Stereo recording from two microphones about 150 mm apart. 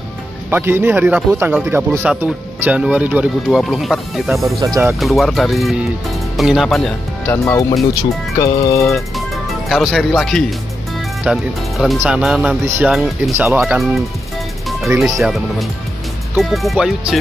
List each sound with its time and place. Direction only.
0.5 s speech: 15° right (ahead or behind)
4.6 s speech: 25° right (ahead or behind)
5.0 s speech: centre (ahead or behind)
7.4 s music: 20° left (ahead or behind)
8.8 s speech: centre (ahead or behind)
12.6 s speech: 15° right (ahead or behind)
12.9 s speech: 5° right (ahead or behind)
13.5 s speech: 15° right (ahead or behind)
15.0 s speech: centre (ahead or behind)